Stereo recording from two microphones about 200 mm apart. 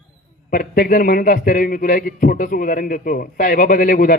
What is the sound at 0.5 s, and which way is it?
A man's voice, 45° left (ahead or behind).